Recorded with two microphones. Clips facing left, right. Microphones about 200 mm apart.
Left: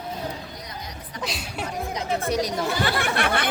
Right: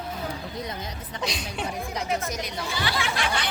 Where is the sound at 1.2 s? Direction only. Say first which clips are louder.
Even; 5° left (ahead or behind).